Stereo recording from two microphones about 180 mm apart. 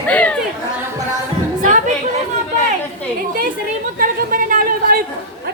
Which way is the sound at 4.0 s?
50° right (ahead or behind).